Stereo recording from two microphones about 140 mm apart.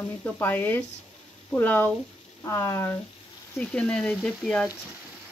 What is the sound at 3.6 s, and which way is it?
Speech, 5° left (ahead or behind).